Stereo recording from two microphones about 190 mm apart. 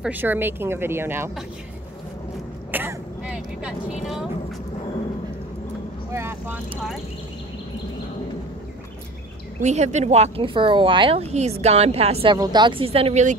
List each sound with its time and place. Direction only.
0.0 s a woman's voice: 10° right (ahead or behind)
2.7 s vehicle: 10° right (ahead or behind)
6.1 s a woman's voice: 10° right (ahead or behind)
9.6 s a woman's voice: 40° right (ahead or behind)